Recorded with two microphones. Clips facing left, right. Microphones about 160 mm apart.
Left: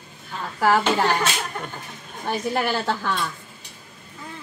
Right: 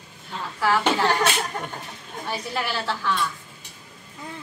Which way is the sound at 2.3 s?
50° left (ahead or behind).